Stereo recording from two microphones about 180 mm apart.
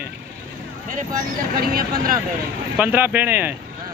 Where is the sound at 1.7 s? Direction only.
55° right (ahead or behind).